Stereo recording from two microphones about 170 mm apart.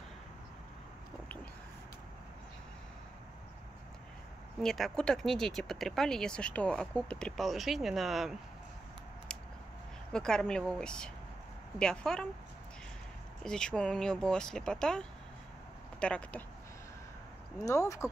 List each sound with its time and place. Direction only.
4.6 s speech: centre (ahead or behind)
10.1 s speech: 5° left (ahead or behind)
13.4 s speech: 5° left (ahead or behind)
17.6 s speech: 20° left (ahead or behind)